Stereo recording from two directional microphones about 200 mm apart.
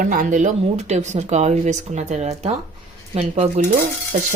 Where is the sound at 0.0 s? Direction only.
45° right (ahead or behind).